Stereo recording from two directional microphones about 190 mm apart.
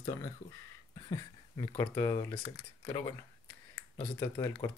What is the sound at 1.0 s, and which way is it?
Speech, 25° left (ahead or behind).